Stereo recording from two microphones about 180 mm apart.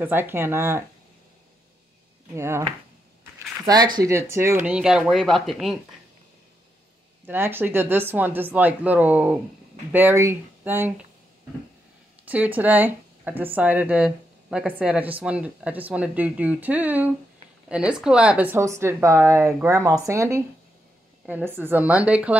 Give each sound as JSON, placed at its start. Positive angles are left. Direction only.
{"t": 0.0, "sound": "speech", "side_deg": -10}
{"t": 2.3, "sound": "speech", "side_deg": -15}
{"t": 3.6, "sound": "speech", "side_deg": -20}
{"t": 4.6, "sound": "speech", "side_deg": -5}
{"t": 7.2, "sound": "speech", "side_deg": -10}
{"t": 12.3, "sound": "speech", "side_deg": -10}